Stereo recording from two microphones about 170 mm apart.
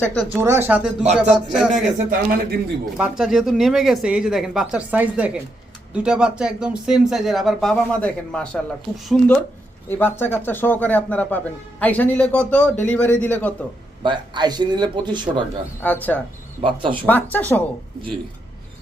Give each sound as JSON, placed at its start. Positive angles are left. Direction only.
{"t": 0.0, "sound": "speech", "side_deg": 5}
{"t": 0.3, "sound": "speech", "side_deg": -15}
{"t": 1.7, "sound": "a man's voice", "side_deg": -55}
{"t": 3.0, "sound": "a man's voice", "side_deg": 0}
{"t": 14.0, "sound": "speech", "side_deg": -25}
{"t": 15.8, "sound": "a man's voice", "side_deg": 10}
{"t": 16.6, "sound": "speech", "side_deg": -30}
{"t": 17.1, "sound": "a man's voice", "side_deg": 10}